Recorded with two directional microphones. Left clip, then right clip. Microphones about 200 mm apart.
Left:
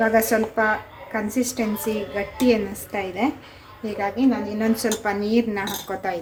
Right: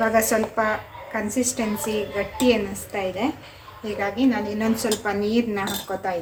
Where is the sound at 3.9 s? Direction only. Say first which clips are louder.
Even; 10° left (ahead or behind).